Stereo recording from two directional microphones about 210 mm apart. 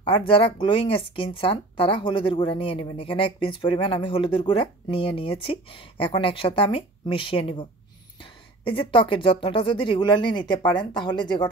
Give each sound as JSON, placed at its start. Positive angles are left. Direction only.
{"t": 0.0, "sound": "speech", "side_deg": 25}